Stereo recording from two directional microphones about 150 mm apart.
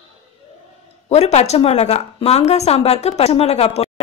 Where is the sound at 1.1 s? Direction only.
45° left (ahead or behind).